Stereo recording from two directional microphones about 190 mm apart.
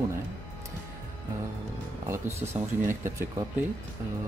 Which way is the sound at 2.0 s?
10° right (ahead or behind).